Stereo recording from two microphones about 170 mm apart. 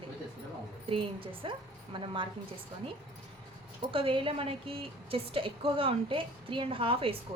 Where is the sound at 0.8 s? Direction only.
30° right (ahead or behind).